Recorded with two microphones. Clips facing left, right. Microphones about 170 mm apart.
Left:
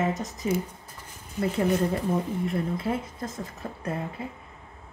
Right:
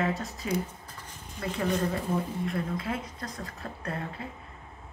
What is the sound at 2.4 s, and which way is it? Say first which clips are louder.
Speech: left 4 dB; 25° left (ahead or behind).